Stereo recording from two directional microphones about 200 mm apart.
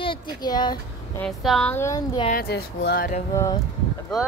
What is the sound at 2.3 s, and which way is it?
Speech, 50° left (ahead or behind).